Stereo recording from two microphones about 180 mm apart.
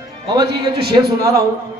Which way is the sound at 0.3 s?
25° right (ahead or behind).